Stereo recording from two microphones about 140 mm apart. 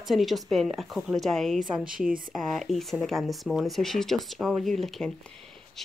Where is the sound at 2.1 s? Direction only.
85° right.